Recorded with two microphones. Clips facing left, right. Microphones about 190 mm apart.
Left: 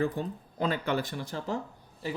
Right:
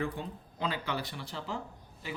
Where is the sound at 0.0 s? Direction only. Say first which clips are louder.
Left 6 dB; 45° left (ahead or behind).